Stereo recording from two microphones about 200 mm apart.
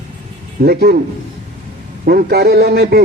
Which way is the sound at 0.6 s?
50° right (ahead or behind).